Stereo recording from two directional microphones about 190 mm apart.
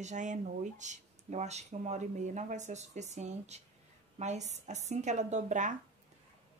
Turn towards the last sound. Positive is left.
turn(degrees=-40)  # may be behind; listen again after turning